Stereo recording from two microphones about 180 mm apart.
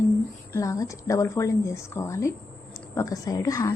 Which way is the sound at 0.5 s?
15° left (ahead or behind).